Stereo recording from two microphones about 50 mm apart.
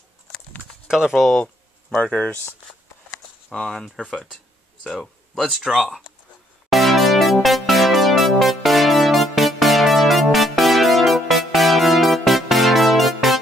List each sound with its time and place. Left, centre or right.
0.8 s speech: centre
2.0 s speech: left
3.5 s speech: centre
5.5 s speech: centre
5.8 s speech: centre
6.7 s music: centre